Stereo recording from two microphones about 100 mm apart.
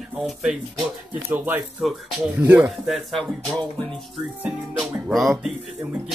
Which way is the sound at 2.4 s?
20° right (ahead or behind).